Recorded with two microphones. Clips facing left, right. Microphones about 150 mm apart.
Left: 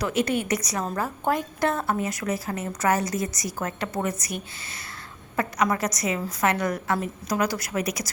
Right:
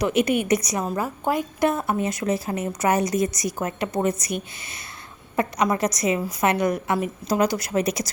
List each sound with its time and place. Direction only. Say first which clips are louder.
0.0 s a woman's voice: right 4 dB; 20° right (ahead or behind)